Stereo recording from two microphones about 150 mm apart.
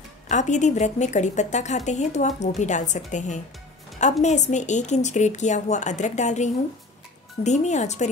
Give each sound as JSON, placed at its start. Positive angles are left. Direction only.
{"t": 0.3, "sound": "speech", "side_deg": 55}